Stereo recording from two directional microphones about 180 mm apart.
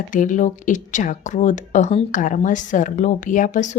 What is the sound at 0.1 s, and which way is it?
Speech, 45° left (ahead or behind).